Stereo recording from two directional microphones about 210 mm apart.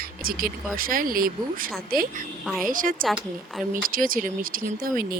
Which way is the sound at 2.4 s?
Centre (ahead or behind).